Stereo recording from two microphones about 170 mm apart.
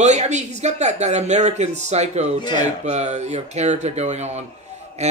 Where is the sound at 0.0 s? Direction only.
40° right (ahead or behind).